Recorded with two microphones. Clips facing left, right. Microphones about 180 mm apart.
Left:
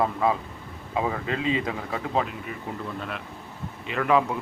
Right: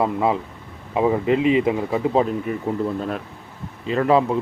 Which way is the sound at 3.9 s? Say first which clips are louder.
Right 5 dB; 30° right (ahead or behind).